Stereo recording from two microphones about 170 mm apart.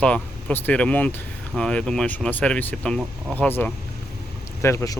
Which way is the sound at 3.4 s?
10° left (ahead or behind).